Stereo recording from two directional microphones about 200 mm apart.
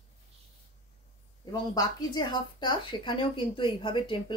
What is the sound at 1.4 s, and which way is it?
Speech, 20° left (ahead or behind).